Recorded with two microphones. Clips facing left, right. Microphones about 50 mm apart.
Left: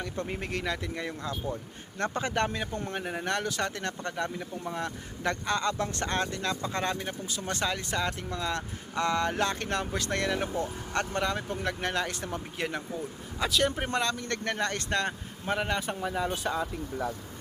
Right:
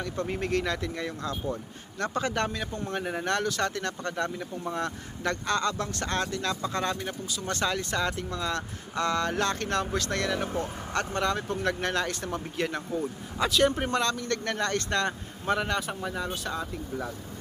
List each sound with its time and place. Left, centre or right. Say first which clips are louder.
0.3 s a man's voice: right 7 dB; centre
2.9 s a man's voice: right 4 dB; centre
4.1 s a man's voice: right 2 dB; centre
13.8 s a man's voice: right 2 dB; centre